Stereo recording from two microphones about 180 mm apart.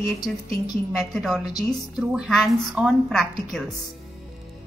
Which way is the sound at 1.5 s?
20° left (ahead or behind).